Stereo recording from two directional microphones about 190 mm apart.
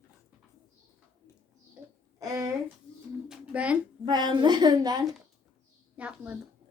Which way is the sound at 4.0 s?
20° right (ahead or behind).